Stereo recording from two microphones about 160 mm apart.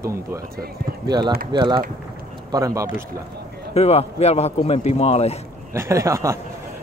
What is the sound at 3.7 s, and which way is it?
A man's voice, 40° left (ahead or behind).